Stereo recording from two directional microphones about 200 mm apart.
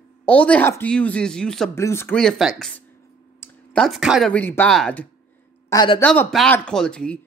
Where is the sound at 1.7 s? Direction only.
15° left (ahead or behind).